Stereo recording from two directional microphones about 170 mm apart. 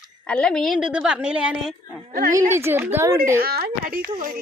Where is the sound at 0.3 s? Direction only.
5° left (ahead or behind); by 3.2 s 15° right (ahead or behind).